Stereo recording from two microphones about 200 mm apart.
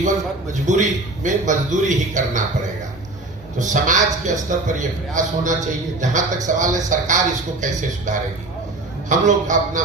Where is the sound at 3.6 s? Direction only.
40° right (ahead or behind).